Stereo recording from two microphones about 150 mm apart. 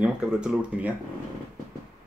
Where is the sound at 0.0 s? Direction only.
5° right (ahead or behind).